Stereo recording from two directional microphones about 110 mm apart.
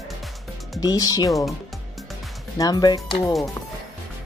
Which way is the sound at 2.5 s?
35° left (ahead or behind).